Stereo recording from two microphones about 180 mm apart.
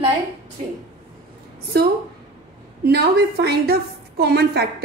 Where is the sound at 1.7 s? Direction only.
60° right (ahead or behind).